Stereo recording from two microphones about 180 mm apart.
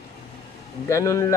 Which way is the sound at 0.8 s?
15° left (ahead or behind).